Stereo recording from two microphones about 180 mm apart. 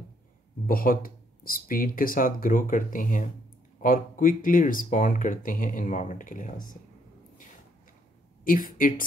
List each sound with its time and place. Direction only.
0.7 s speech: 55° left (ahead or behind)
8.5 s speech: 50° left (ahead or behind)